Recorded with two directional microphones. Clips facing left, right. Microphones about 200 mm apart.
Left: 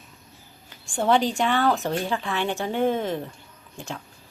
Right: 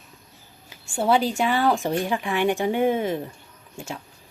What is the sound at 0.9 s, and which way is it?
A woman's voice, 10° right (ahead or behind).